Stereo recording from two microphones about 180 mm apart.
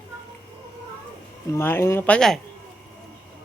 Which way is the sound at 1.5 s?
15° left (ahead or behind).